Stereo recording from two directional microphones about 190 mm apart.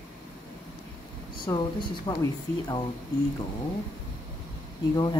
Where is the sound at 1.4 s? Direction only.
25° left (ahead or behind).